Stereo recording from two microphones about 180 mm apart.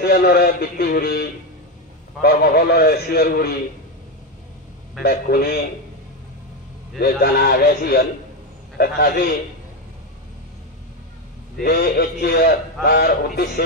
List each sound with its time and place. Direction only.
0.0 s speech: 60° left (ahead or behind)
5.0 s speech: 60° left (ahead or behind)
7.0 s speech: 55° left (ahead or behind)
11.6 s speech: 60° left (ahead or behind)